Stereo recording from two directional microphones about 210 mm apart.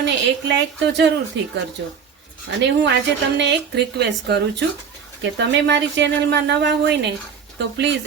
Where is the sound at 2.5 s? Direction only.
55° right (ahead or behind).